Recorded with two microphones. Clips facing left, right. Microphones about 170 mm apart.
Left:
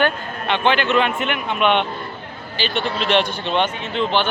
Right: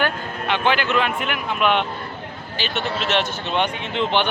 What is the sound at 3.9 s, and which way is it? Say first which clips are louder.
Speech: left 1 dB; 20° right (ahead or behind).